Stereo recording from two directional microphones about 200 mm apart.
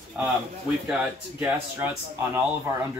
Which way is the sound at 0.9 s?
5° right (ahead or behind).